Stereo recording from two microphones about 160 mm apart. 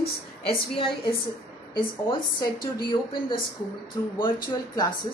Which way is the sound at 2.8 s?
30° left (ahead or behind).